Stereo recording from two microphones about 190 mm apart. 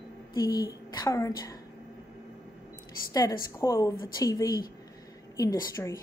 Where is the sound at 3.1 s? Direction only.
20° left (ahead or behind).